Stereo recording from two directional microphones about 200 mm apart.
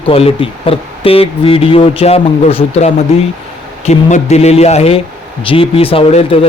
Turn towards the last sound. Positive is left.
turn(degrees=30)  # may be behind; listen again after turning